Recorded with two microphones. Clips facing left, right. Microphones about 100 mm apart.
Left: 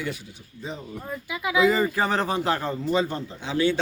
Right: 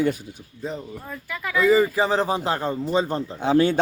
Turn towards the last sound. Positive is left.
turn(degrees=-45)  # may be behind; listen again after turning